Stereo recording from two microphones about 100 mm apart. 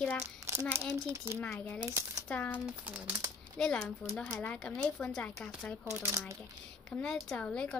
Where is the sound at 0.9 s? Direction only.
30° right (ahead or behind).